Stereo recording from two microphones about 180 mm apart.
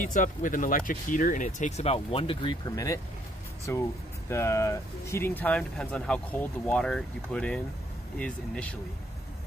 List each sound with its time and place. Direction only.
0.0 s speech: 45° left (ahead or behind); by 8.7 s 5° left (ahead or behind)